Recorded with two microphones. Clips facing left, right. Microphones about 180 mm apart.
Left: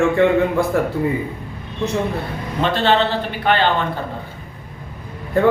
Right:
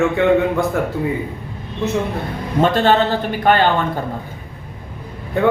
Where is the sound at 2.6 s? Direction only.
45° right (ahead or behind).